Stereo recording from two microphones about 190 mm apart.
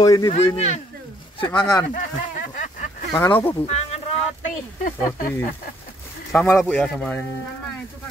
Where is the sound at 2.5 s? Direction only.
45° left (ahead or behind).